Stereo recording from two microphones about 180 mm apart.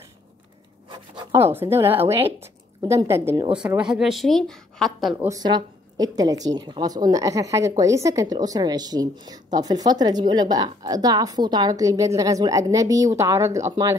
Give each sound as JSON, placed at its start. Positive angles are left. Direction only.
{"t": 0.8, "sound": "a woman's voice", "side_deg": -25}
{"t": 5.2, "sound": "a woman's voice", "side_deg": -20}